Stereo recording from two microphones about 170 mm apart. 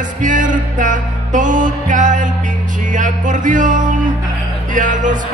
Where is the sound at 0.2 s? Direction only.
50° right (ahead or behind).